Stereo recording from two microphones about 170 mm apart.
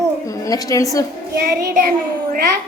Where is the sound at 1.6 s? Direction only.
60° right (ahead or behind).